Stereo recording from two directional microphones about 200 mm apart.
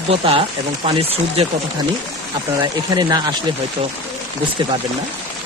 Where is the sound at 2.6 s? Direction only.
20° right (ahead or behind).